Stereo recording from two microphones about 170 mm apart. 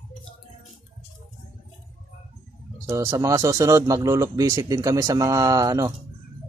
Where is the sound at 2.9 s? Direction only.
15° right (ahead or behind).